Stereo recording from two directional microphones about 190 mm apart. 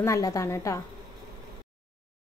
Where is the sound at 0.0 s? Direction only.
15° left (ahead or behind).